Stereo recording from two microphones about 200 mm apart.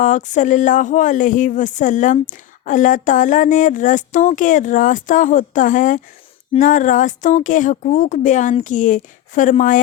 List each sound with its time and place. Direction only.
0.0 s speech: 35° left (ahead or behind)